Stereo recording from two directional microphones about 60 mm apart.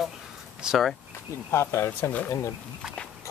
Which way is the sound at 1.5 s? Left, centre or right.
Left.